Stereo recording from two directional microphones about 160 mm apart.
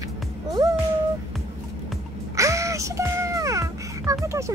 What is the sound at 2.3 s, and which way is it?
Music, 20° right (ahead or behind).